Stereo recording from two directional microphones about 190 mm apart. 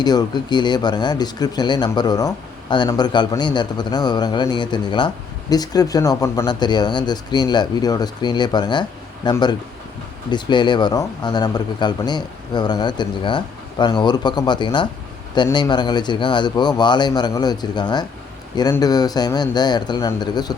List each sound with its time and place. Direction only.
0.0 s speech: 20° left (ahead or behind)